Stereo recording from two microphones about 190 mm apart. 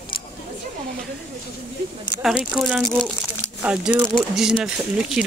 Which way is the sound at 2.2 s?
Centre (ahead or behind).